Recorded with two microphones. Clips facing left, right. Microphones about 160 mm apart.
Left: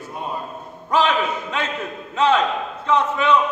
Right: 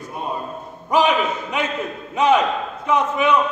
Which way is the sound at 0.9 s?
15° right (ahead or behind).